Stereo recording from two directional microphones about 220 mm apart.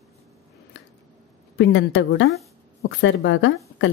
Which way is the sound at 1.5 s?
55° left (ahead or behind).